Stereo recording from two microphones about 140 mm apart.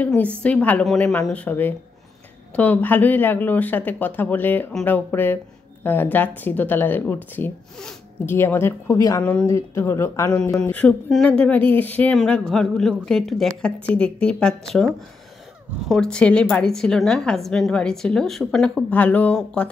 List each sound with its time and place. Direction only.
0.0 s speech: 10° left (ahead or behind)
9.2 s speech: 10° left (ahead or behind)
9.5 s speech: 20° left (ahead or behind)
10.6 s a woman's voice: 10° left (ahead or behind)
15.9 s a woman's voice: 5° left (ahead or behind)